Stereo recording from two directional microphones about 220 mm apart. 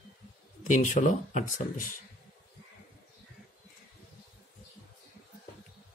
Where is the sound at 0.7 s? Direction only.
35° left (ahead or behind).